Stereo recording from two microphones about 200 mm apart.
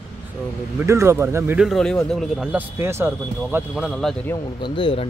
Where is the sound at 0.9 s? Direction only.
15° right (ahead or behind).